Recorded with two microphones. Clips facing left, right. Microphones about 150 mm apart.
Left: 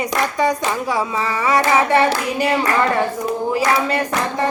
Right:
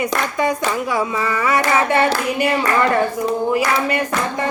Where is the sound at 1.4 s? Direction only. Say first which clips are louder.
Left 2 dB; 30° left (ahead or behind).